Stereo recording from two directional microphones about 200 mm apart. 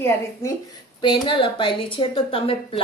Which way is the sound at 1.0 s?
25° left (ahead or behind).